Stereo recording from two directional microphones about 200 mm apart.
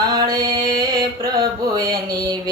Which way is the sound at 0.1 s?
20° right (ahead or behind).